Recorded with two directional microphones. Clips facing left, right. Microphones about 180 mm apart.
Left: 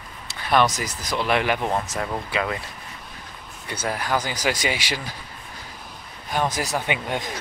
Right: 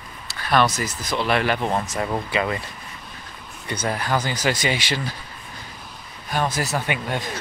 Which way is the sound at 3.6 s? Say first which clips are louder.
Right 2 dB; 5° left (ahead or behind).